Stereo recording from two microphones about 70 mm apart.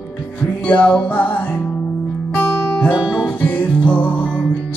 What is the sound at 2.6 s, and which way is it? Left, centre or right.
Music, left.